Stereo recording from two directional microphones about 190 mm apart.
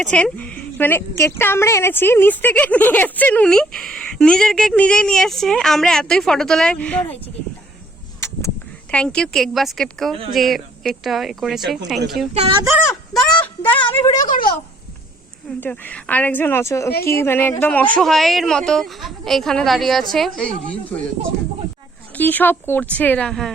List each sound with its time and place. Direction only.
0.0 s a woman's voice: 5° left (ahead or behind)
8.2 s a woman's voice: 15° left (ahead or behind); by 12.1 s centre (ahead or behind)
12.3 s speech: 30° right (ahead or behind)
13.4 s speech: 10° left (ahead or behind)
14.2 s speech: 45° left (ahead or behind)
15.4 s a woman's voice: 10° left (ahead or behind)
22.1 s a woman's voice: 10° left (ahead or behind)